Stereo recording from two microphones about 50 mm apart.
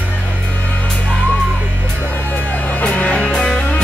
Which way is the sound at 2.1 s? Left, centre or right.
Left.